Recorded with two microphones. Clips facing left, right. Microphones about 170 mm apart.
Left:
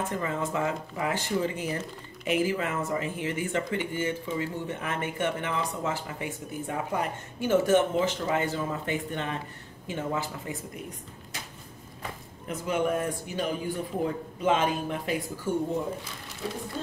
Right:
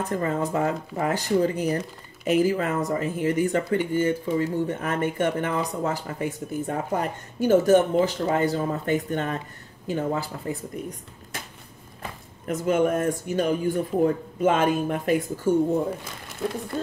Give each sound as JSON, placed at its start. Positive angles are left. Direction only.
{"t": 0.1, "sound": "speech", "side_deg": -40}
{"t": 11.3, "sound": "a sound", "side_deg": -55}
{"t": 12.4, "sound": "speech", "side_deg": -50}